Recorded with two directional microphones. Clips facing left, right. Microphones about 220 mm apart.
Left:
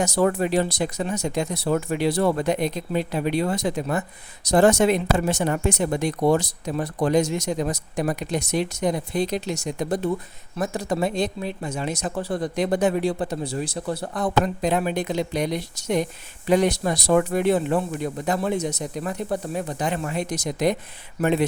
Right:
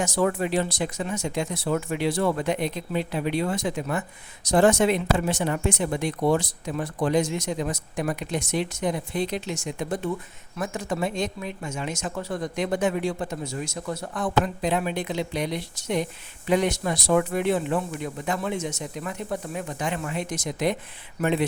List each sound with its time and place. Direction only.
0.0 s speech: 40° left (ahead or behind)